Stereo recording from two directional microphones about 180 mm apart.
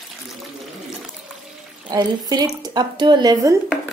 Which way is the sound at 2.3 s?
20° right (ahead or behind).